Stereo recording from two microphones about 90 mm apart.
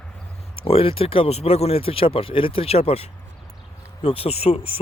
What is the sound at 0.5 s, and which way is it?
Speech, 90° left.